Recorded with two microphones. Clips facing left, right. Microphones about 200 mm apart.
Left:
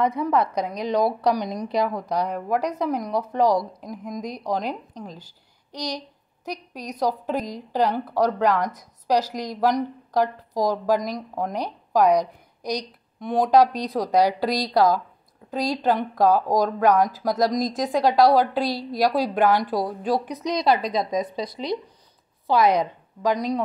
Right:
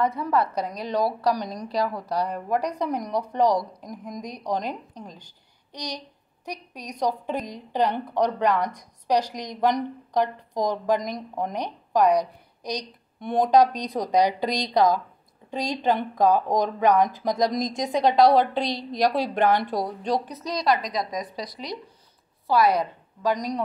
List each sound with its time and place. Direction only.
0.0 s a woman's voice: 15° left (ahead or behind)
20.6 s a woman's voice: 30° left (ahead or behind)